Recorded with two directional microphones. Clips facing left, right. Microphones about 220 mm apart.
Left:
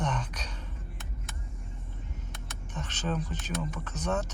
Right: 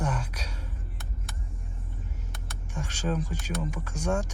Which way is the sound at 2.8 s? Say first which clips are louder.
Right 3 dB; 10° right (ahead or behind).